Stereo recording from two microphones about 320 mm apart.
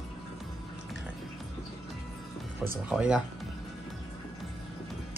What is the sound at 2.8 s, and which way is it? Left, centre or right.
Speech, centre.